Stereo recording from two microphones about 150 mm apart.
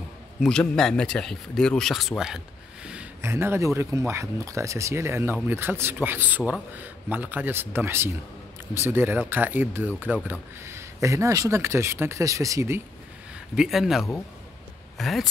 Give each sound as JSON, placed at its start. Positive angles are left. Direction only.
{"t": 0.4, "sound": "speech", "side_deg": 5}
{"t": 13.6, "sound": "speech", "side_deg": 0}